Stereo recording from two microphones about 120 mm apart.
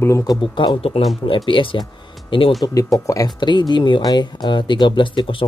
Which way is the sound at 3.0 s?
25° left (ahead or behind).